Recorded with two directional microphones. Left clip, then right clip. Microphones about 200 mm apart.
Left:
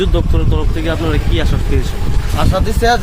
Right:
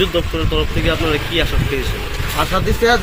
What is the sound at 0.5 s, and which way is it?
Speech, 55° left (ahead or behind).